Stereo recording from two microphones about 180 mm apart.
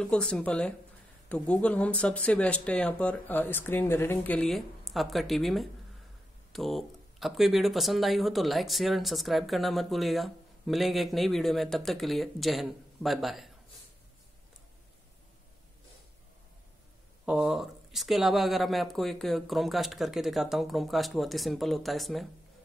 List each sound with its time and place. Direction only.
0.0 s speech: 5° left (ahead or behind)
17.3 s speech: 5° right (ahead or behind)